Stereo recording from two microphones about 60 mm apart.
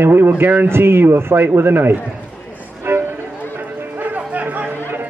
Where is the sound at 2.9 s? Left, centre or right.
Right.